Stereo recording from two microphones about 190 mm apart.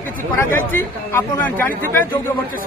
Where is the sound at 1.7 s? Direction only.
45° right (ahead or behind).